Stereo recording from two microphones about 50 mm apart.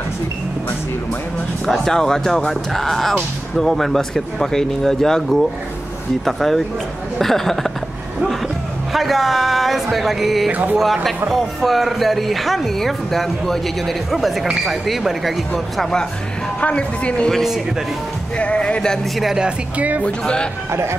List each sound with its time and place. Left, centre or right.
1.7 s speech: centre
8.9 s speech: centre
10.5 s music: right
11.2 s speech: centre
15.8 s speech: centre
16.6 s a woman's voice: left
18.4 s a woman's voice: left
20.0 s a woman's voice: centre